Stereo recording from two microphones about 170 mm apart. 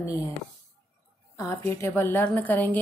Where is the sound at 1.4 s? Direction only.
20° left (ahead or behind).